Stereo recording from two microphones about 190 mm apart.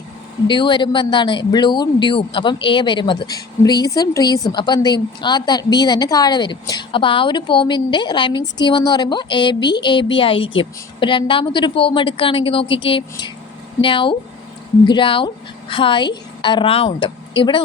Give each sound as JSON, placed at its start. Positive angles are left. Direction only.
{"t": 0.4, "sound": "speech", "side_deg": 25}